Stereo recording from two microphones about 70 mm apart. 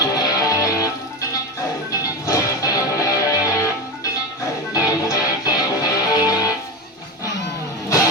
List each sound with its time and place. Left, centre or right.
0.2 s music: left
1.9 s music: left
4.7 s music: left